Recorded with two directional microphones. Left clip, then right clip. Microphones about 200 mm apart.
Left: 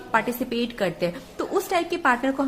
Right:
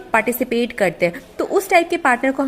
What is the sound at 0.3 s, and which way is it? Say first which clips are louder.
A woman's voice: right 7 dB; 25° right (ahead or behind).